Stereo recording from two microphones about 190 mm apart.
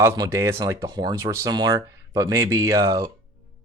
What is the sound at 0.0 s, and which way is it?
Speech, 15° right (ahead or behind).